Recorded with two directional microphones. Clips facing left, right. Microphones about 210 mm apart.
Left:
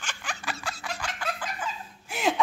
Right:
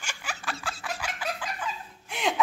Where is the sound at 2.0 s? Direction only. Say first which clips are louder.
Left 2 dB; 5° left (ahead or behind).